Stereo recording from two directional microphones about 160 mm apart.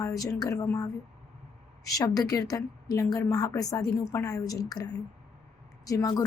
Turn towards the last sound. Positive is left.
turn(degrees=20)  # may be behind; listen again after turning